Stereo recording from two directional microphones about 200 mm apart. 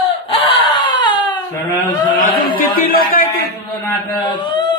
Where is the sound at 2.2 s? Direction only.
45° left (ahead or behind).